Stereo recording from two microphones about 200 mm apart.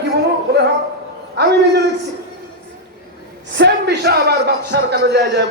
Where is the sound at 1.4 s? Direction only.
60° right (ahead or behind).